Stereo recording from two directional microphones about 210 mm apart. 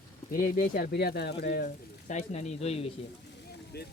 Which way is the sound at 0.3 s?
40° left (ahead or behind).